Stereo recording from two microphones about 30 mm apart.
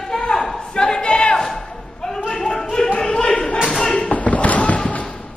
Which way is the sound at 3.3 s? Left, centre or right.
Left.